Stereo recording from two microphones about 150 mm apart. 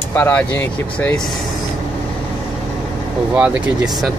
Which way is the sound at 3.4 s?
5° right (ahead or behind).